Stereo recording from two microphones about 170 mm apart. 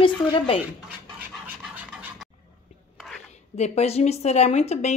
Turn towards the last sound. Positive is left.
turn(degrees=40)  # may be behind; listen again after turning